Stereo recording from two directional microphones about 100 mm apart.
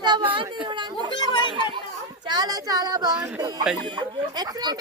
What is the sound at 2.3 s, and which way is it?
Child singing, 40° right (ahead or behind).